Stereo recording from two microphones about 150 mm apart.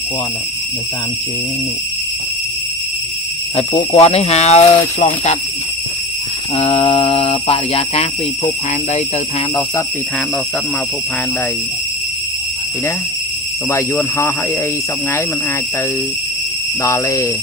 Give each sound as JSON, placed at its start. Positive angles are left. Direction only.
{"t": 3.5, "sound": "speech", "side_deg": 40}
{"t": 6.5, "sound": "speech", "side_deg": 40}
{"t": 13.7, "sound": "speech", "side_deg": 15}
{"t": 16.8, "sound": "speech", "side_deg": 20}